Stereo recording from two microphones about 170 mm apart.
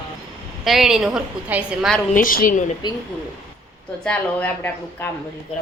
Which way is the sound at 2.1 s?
55° left (ahead or behind).